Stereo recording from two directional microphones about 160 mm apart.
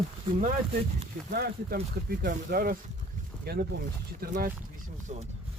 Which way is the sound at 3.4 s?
75° right (ahead or behind).